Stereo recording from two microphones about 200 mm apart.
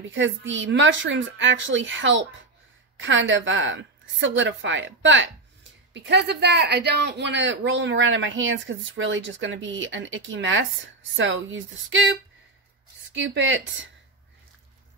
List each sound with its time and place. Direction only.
0.0 s a woman's voice: 70° right (ahead or behind)
13.2 s a woman's voice: 65° right (ahead or behind)